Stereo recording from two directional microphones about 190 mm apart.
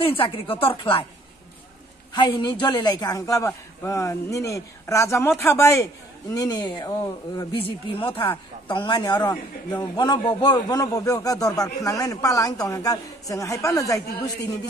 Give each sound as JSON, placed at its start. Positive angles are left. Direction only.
{"t": 0.0, "sound": "speech", "side_deg": 30}
{"t": 2.1, "sound": "a man's voice", "side_deg": 25}